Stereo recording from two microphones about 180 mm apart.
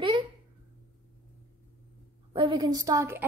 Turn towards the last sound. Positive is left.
turn(degrees=-15)  # may be behind; listen again after turning